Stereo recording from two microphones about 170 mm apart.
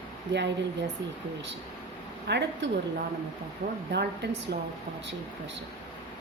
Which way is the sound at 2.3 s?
90° right.